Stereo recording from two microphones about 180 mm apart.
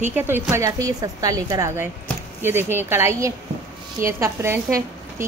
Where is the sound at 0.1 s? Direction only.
10° right (ahead or behind).